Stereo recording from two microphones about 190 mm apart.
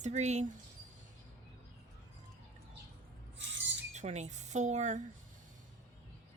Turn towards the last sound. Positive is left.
turn(degrees=-40)  # may be behind; listen again after turning